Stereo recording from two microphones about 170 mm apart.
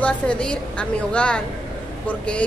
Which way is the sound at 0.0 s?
5° left (ahead or behind).